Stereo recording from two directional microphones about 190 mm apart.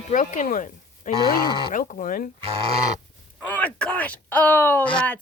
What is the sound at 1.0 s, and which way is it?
Livestock, 40° left (ahead or behind).